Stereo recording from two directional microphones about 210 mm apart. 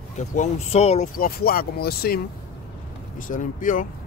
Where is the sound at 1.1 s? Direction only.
45° left (ahead or behind).